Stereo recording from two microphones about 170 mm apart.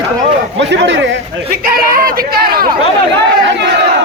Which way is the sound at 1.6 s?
55° right (ahead or behind).